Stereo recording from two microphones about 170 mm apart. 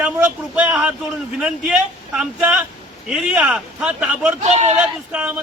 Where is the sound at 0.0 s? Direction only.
10° right (ahead or behind).